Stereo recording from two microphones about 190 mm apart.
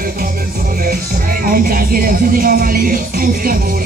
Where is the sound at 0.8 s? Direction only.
50° right (ahead or behind).